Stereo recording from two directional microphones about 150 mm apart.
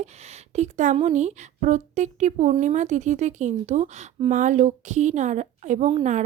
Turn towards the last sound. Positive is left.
turn(degrees=-40)  # may be behind; listen again after turning